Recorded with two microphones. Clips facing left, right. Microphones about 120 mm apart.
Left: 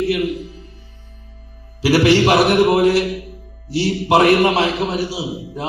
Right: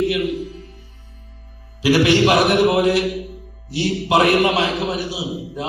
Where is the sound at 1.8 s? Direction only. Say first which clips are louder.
Left 1 dB; 30° left (ahead or behind).